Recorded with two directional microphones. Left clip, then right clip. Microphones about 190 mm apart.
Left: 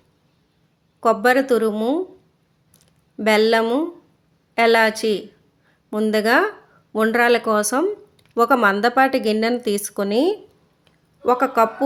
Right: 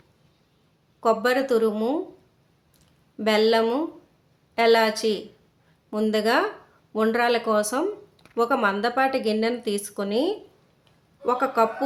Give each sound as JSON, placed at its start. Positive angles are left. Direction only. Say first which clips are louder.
{"t": 1.0, "sound": "speech", "louder": "left 5 dB", "side_deg": 30}
{"t": 2.7, "sound": "a sound", "louder": "left 4 dB", "side_deg": 30}
{"t": 4.5, "sound": "speech", "louder": "left 3 dB", "side_deg": 30}